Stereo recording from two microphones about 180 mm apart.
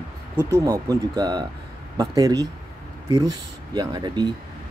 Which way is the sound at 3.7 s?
25° right (ahead or behind).